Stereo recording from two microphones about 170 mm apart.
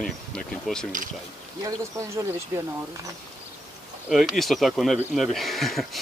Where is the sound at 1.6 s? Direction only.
20° right (ahead or behind).